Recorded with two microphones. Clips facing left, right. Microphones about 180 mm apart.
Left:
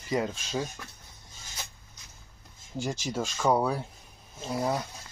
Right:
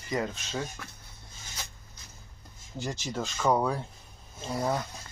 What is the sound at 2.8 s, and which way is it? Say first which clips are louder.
Speech: left 2 dB; 10° left (ahead or behind).